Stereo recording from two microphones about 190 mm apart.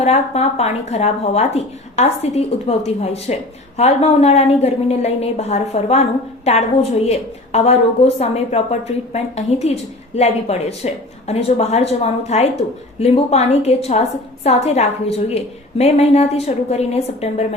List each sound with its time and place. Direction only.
0.0 s a woman's voice: 35° left (ahead or behind)